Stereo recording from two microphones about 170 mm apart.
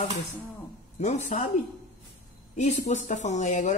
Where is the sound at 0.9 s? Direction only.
40° left (ahead or behind).